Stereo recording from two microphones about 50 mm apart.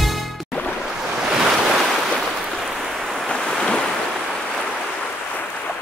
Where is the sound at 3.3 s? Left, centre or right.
Centre.